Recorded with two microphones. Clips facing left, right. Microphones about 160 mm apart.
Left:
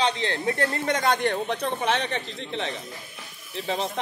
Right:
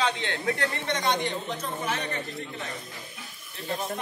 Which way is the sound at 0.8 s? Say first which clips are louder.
Left 4 dB; 50° left (ahead or behind).